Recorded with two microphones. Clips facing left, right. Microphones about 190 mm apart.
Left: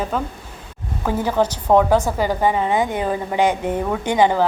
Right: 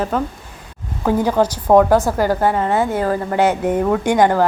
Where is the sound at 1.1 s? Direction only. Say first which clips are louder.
Right 4 dB; 10° right (ahead or behind).